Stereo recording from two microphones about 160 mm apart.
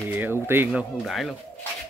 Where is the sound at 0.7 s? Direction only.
Centre (ahead or behind).